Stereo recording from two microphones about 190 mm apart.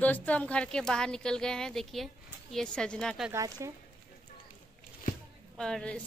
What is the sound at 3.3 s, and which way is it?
Speech, 15° right (ahead or behind).